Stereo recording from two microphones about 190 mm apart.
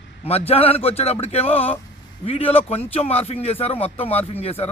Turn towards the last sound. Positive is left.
turn(degrees=30)  # may be behind; listen again after turning